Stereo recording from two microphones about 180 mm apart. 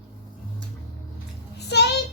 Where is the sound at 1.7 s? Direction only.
70° left (ahead or behind).